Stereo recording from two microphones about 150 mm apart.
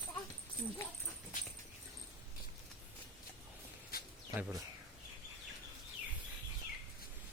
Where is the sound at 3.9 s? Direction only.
80° left.